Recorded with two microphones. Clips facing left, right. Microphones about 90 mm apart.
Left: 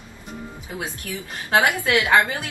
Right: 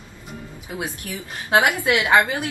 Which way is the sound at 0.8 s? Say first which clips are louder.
Right 1 dB; 20° right (ahead or behind).